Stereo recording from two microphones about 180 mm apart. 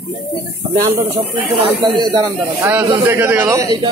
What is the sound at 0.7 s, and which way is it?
Speech, 25° right (ahead or behind).